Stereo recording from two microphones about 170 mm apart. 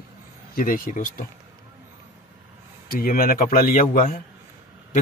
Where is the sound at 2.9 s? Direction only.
60° left (ahead or behind).